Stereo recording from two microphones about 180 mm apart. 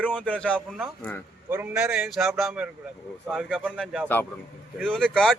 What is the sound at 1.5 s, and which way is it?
Speech, 10° right (ahead or behind).